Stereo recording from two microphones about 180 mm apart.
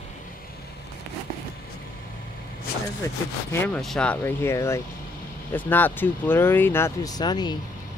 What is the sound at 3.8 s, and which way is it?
Speech, 5° left (ahead or behind).